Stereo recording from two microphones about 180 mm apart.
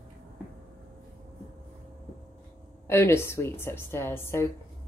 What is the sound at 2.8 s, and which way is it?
A woman's voice, 15° left (ahead or behind).